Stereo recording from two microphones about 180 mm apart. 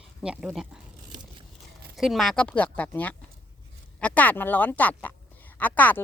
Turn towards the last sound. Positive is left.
turn(degrees=10)  # may be behind; listen again after turning